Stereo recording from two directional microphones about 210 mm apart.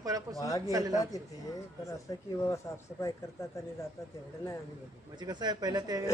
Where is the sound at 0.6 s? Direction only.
15° right (ahead or behind).